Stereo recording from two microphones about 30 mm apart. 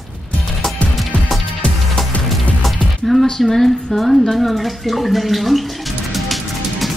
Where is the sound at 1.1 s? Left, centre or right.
Left.